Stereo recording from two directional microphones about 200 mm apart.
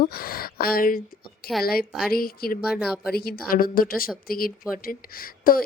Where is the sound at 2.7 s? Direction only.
Centre (ahead or behind).